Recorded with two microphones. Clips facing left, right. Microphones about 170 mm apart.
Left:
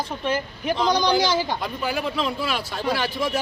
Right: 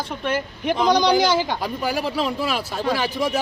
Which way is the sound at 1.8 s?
40° right (ahead or behind).